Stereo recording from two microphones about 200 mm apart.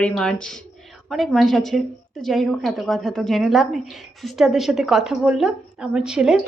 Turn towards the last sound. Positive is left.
turn(degrees=-5)  # may be behind; listen again after turning